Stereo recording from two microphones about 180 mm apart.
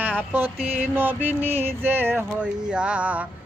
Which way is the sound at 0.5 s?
35° right (ahead or behind).